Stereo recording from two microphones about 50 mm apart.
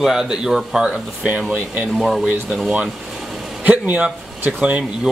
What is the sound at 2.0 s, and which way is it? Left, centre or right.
Speech, centre.